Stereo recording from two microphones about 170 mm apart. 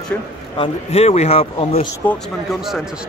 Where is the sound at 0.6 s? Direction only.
35° left (ahead or behind).